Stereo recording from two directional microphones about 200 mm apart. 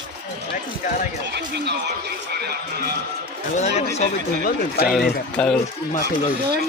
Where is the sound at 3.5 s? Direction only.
35° left (ahead or behind).